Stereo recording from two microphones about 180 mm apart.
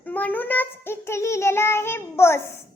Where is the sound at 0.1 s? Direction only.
10° left (ahead or behind).